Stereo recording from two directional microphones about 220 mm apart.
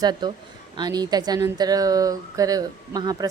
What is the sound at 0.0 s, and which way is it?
Speech, 20° right (ahead or behind).